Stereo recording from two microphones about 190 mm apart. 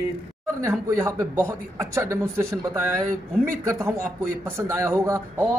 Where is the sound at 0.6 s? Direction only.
15° right (ahead or behind).